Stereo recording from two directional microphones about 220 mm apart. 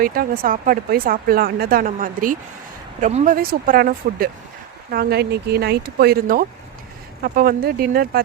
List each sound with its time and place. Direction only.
0.0 s speech: 40° right (ahead or behind)